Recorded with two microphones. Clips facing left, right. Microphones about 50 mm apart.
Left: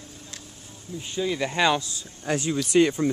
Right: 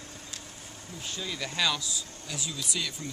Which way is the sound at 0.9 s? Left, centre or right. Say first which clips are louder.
Left 10 dB; centre.